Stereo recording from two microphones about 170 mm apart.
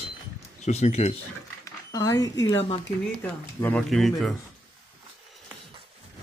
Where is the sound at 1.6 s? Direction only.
20° left (ahead or behind).